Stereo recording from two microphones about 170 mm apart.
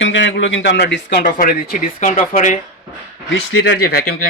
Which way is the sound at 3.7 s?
65° left (ahead or behind).